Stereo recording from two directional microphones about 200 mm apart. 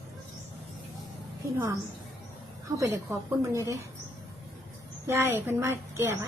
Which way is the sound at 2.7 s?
15° right (ahead or behind).